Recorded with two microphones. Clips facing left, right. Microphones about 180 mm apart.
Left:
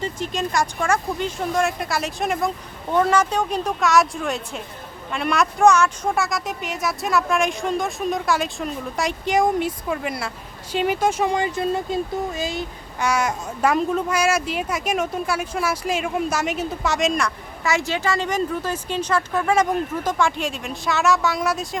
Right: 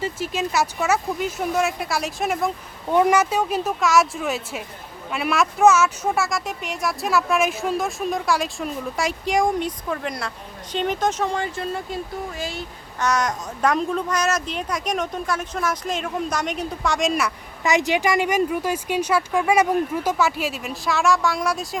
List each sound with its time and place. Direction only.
0.0 s speech: 5° right (ahead or behind)
2.9 s speech: 10° right (ahead or behind)
17.6 s a woman's voice: 20° right (ahead or behind); by 21.8 s centre (ahead or behind)